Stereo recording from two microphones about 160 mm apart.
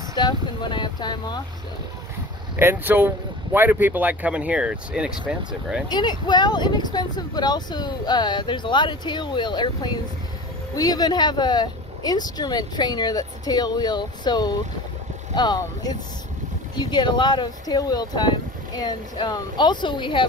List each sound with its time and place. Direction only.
0.1 s speech: 25° left (ahead or behind)
2.5 s speech: 15° right (ahead or behind)
5.9 s speech: 25° left (ahead or behind)